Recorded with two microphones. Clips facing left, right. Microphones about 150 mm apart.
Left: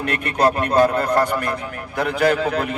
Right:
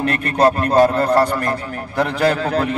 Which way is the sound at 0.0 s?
35° right (ahead or behind).